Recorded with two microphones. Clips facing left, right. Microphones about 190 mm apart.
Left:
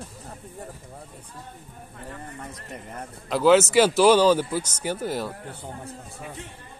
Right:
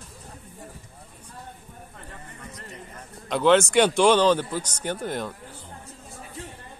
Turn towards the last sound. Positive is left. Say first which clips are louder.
# left 1 dB
turn(degrees=5)  # may be behind; listen again after turning